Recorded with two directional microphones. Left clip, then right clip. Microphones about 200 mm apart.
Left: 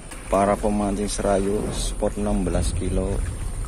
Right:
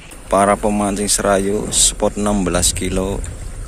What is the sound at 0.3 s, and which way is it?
Speech, 15° right (ahead or behind).